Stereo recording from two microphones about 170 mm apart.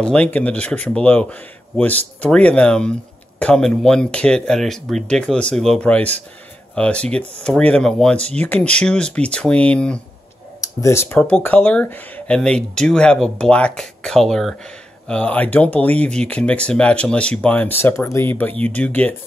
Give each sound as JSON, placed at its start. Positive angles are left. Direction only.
{"t": 0.0, "sound": "speech", "side_deg": 5}
{"t": 10.6, "sound": "speech", "side_deg": 15}